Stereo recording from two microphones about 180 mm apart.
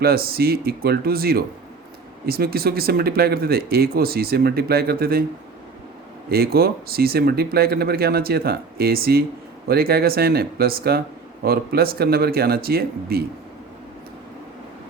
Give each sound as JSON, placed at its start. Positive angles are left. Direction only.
{"t": 0.0, "sound": "speech", "side_deg": -55}
{"t": 6.3, "sound": "speech", "side_deg": -60}